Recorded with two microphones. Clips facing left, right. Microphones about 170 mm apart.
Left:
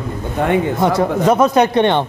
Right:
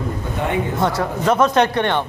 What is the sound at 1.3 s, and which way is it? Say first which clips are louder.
Speech: left 2 dB; 10° left (ahead or behind).